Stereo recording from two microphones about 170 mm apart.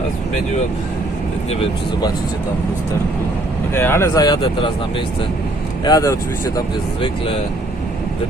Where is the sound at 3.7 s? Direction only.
15° left (ahead or behind).